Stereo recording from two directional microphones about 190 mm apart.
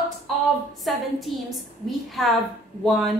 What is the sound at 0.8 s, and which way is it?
A woman's voice, centre (ahead or behind).